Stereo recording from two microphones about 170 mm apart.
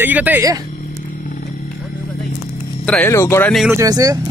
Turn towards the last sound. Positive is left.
turn(degrees=-20)  # may be behind; listen again after turning